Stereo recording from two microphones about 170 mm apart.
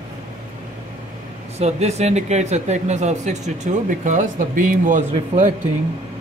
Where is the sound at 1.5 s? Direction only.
40° right (ahead or behind).